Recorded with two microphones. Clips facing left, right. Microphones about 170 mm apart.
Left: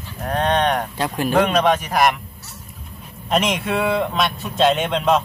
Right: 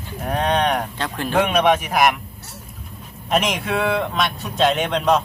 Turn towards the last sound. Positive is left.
turn(degrees=0)  # may be behind; listen again after turning